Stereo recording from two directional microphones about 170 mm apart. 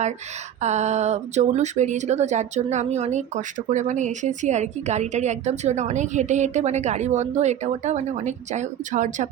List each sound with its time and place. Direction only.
0.6 s speech: 40° right (ahead or behind)